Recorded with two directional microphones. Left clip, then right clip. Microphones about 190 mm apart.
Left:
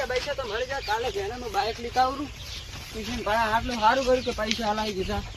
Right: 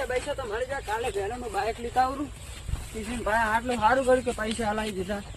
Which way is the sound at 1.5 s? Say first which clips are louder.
Left 1 dB; 10° right (ahead or behind).